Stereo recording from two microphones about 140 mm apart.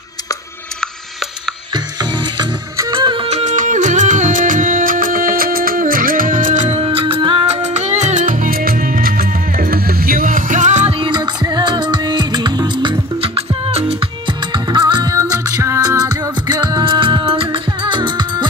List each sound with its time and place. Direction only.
2.3 s music: 35° right (ahead or behind)
3.3 s music: 60° right (ahead or behind)
6.8 s music: 40° right (ahead or behind)
7.7 s music: 55° right (ahead or behind)
11.0 s music: 35° right (ahead or behind)
13.2 s music: 50° right (ahead or behind)
14.5 s music: 35° right (ahead or behind)
15.1 s music: 20° right (ahead or behind)